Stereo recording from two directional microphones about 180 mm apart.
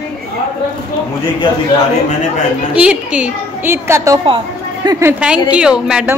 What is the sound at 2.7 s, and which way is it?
A woman's voice, 5° right (ahead or behind).